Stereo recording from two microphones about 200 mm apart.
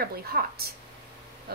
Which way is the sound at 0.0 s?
50° right (ahead or behind).